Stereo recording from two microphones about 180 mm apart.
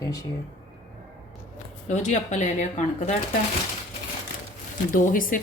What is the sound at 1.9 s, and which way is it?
Speech, 40° left (ahead or behind).